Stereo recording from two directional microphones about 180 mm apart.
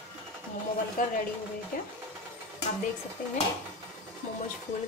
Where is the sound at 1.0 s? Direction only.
50° left (ahead or behind).